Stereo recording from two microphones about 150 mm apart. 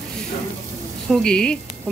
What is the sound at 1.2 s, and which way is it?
Speech, 5° left (ahead or behind).